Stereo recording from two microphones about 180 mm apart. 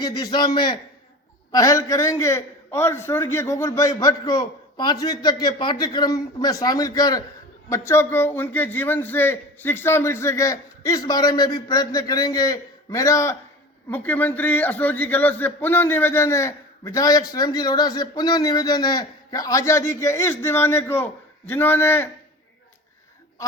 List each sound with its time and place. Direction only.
0.0 s a man's voice: 25° left (ahead or behind)